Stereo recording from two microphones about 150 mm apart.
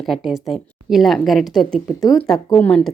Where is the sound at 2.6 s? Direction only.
5° left (ahead or behind).